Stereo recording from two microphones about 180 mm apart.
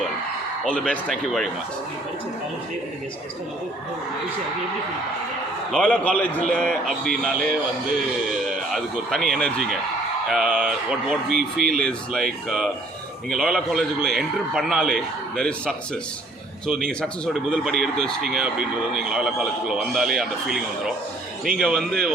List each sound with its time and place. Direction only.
0.6 s a man's voice: 5° left (ahead or behind)
5.7 s a man's voice: centre (ahead or behind)
8.7 s a man's voice: centre (ahead or behind)